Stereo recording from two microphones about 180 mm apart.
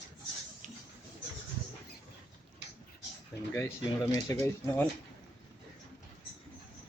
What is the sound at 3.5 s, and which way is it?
Speech, 15° left (ahead or behind).